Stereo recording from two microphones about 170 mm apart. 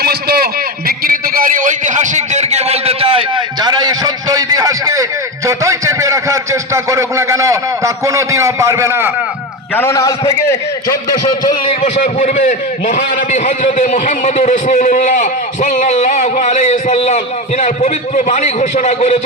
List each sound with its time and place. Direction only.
0.0 s a sound: 65° right (ahead or behind); by 5.0 s 20° right (ahead or behind)
5.5 s a man's voice: 20° right (ahead or behind)
9.7 s a man's voice: 15° left (ahead or behind)
11.8 s a man's voice: 40° left (ahead or behind)